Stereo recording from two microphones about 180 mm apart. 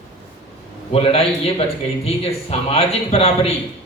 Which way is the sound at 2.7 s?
35° left (ahead or behind).